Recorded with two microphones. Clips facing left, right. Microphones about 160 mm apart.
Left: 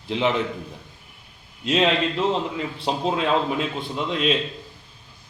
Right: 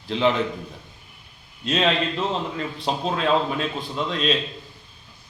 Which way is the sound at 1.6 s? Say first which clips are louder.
Left 2 dB; 20° left (ahead or behind).